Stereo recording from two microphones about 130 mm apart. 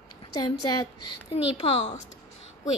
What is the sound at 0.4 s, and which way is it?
Speech, 35° left (ahead or behind).